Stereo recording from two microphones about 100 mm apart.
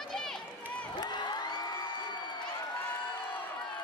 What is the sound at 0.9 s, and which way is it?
Crowd, 45° left (ahead or behind).